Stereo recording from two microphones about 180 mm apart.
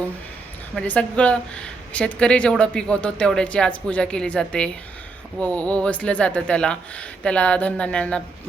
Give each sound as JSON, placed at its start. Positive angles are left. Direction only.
{"t": 0.8, "sound": "speech", "side_deg": 5}